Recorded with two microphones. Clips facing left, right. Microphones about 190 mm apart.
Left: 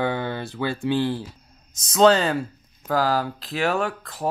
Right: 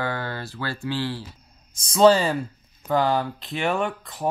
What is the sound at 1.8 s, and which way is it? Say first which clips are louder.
Speech: right 1 dB; centre (ahead or behind).